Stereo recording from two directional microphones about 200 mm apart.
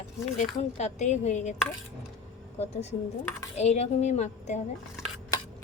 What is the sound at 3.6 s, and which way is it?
Speech, 35° left (ahead or behind).